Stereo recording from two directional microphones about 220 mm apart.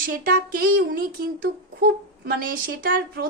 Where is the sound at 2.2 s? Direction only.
40° right (ahead or behind).